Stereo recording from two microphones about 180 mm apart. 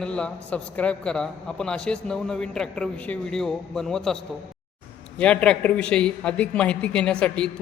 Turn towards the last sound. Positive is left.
turn(degrees=5)  # may be behind; listen again after turning